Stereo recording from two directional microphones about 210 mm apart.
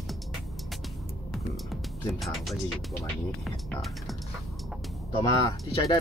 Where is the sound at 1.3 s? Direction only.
Centre (ahead or behind).